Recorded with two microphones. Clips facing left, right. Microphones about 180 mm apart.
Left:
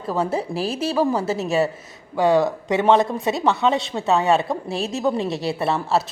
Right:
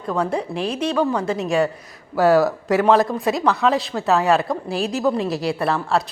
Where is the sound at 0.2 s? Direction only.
5° left (ahead or behind).